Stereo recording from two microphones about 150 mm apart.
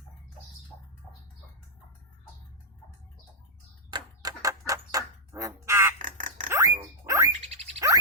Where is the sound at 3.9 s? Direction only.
25° right (ahead or behind).